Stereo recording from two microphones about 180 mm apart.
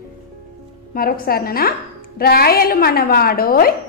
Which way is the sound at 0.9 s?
55° left (ahead or behind).